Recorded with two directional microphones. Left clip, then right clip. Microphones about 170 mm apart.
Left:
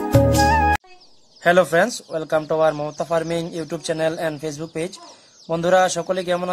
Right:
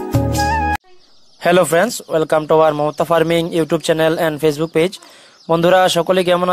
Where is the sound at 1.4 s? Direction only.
35° right (ahead or behind).